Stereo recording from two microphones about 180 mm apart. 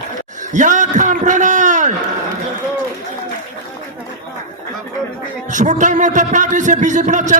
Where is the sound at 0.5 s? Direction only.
45° right (ahead or behind).